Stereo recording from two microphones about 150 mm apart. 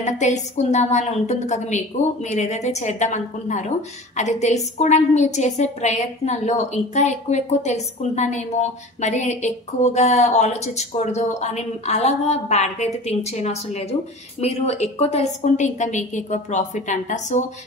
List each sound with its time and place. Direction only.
0.0 s a woman's voice: 50° left (ahead or behind)